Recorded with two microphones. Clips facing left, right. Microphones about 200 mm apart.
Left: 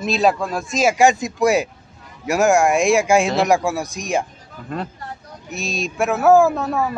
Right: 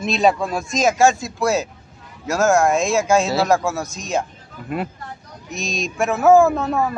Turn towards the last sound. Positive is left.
turn(degrees=0)  # may be behind; listen again after turning